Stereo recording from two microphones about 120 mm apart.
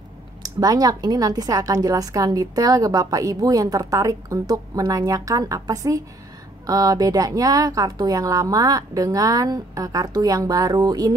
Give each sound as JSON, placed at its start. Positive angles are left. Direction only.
{"t": 0.4, "sound": "a woman's voice", "side_deg": -30}